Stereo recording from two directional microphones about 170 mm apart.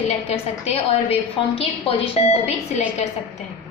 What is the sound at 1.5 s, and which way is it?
A woman's voice, 35° left (ahead or behind).